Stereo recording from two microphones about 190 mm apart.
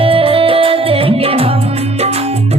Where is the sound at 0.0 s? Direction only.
30° right (ahead or behind).